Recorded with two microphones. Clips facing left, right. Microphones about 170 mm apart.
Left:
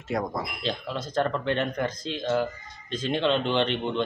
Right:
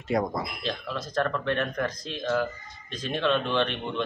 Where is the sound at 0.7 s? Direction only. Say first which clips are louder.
Left 2 dB; 25° left (ahead or behind).